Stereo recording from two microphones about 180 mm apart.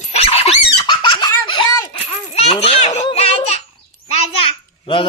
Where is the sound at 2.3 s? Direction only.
35° left (ahead or behind).